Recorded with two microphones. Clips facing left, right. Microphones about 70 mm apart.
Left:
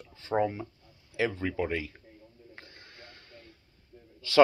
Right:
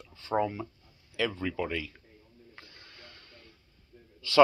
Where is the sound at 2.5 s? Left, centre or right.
Left.